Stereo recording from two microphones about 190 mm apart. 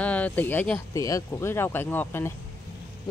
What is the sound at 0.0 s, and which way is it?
Speech, 5° left (ahead or behind).